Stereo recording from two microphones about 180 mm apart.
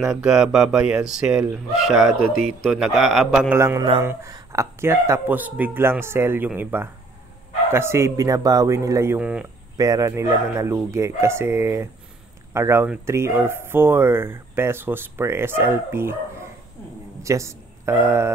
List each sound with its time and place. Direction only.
0.0 s speech: 5° right (ahead or behind)
3.5 s speech: 15° right (ahead or behind)
9.8 s speech: 20° right (ahead or behind)
17.2 s speech: 15° right (ahead or behind)